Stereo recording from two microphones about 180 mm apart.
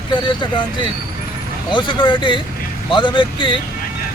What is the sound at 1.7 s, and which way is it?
Speech, 25° left (ahead or behind).